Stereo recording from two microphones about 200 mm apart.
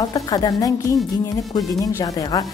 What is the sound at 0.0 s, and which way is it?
Music, 20° left (ahead or behind).